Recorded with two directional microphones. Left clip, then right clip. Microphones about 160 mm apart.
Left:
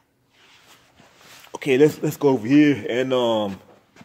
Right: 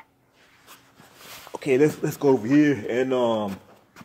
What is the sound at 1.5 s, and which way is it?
Speech, 45° left (ahead or behind).